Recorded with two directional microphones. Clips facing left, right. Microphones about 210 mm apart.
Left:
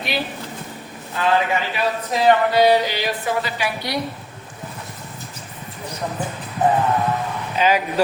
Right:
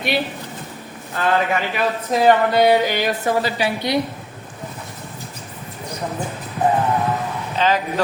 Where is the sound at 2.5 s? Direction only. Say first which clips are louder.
Right 1 dB; 50° right (ahead or behind).